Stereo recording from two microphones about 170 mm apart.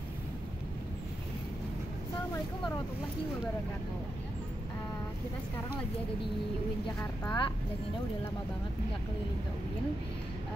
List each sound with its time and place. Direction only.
7.2 s a woman's voice: 30° left (ahead or behind)